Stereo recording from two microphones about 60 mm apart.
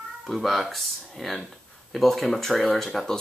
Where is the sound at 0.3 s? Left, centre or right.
Centre.